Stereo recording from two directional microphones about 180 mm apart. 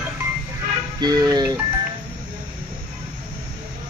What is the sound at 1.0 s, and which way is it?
Speech, 20° right (ahead or behind).